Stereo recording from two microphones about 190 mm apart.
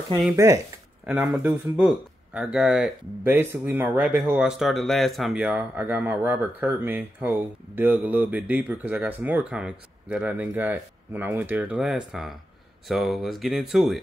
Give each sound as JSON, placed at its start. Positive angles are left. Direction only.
{"t": 1.0, "sound": "speech", "side_deg": 0}